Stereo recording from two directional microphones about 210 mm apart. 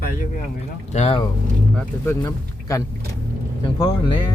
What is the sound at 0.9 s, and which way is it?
Speech, 30° left (ahead or behind).